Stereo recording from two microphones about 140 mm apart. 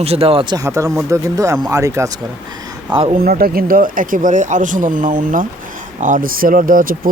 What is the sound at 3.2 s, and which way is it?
A man's voice, 90° right.